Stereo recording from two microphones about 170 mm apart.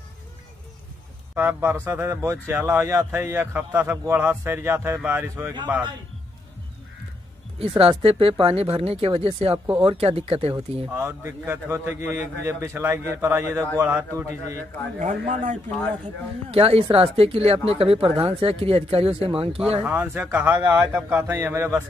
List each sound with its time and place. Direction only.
1.3 s a man's voice: 15° right (ahead or behind)
7.5 s speech: 35° right (ahead or behind)
10.9 s a man's voice: 15° right (ahead or behind)
15.0 s speech: 45° right (ahead or behind)
19.8 s a man's voice: 10° right (ahead or behind)